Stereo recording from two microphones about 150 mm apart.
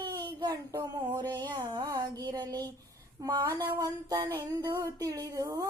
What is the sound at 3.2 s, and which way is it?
Speech, 25° right (ahead or behind).